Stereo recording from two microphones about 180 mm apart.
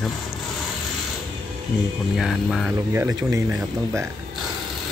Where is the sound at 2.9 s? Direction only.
15° right (ahead or behind).